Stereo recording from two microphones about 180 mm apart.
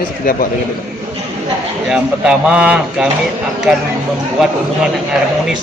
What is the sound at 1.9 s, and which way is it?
Speech, 5° right (ahead or behind).